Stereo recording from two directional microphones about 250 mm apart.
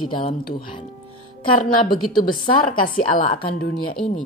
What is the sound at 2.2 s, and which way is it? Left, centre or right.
A woman's voice, left.